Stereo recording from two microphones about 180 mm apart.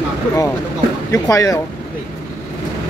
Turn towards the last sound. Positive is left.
turn(degrees=20)  # may be behind; listen again after turning